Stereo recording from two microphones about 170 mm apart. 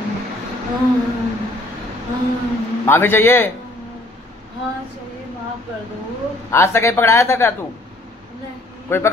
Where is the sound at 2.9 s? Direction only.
15° left (ahead or behind).